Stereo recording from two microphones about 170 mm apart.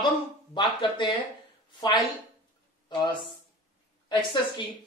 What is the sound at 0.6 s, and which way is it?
Speech, 25° left (ahead or behind).